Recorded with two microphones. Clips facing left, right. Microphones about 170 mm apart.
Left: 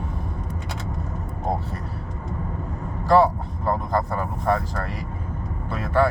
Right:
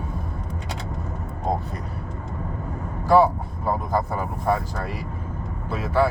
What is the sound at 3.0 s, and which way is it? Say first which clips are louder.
Vehicle: even; 5° right (ahead or behind).